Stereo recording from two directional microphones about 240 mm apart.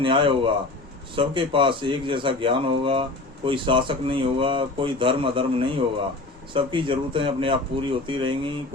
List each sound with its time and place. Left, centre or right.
0.0 s speech: right